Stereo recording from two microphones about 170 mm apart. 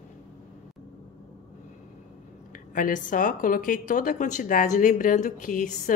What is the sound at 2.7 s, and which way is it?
A woman's voice, 50° left (ahead or behind).